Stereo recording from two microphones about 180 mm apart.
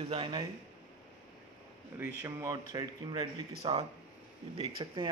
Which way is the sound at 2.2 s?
15° right (ahead or behind).